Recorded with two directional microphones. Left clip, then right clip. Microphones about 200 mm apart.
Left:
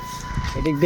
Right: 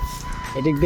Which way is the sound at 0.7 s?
30° right (ahead or behind).